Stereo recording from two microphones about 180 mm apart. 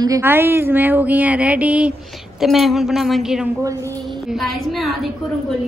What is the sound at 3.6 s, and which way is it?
Speech, 20° right (ahead or behind).